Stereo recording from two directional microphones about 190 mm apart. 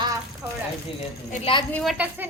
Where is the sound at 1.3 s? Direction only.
30° left (ahead or behind).